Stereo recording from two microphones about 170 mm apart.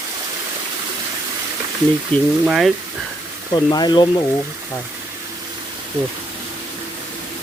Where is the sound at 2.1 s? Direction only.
10° left (ahead or behind).